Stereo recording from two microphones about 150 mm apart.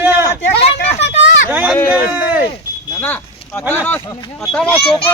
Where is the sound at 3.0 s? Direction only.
15° left (ahead or behind).